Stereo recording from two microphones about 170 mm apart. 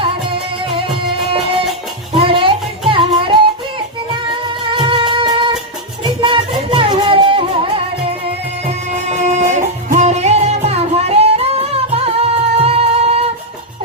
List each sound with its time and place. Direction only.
0.0 s music: 30° right (ahead or behind)
2.1 s music: 30° right (ahead or behind)
9.1 s music: 45° right (ahead or behind)